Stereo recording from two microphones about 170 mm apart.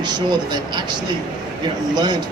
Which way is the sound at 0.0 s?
25° right (ahead or behind).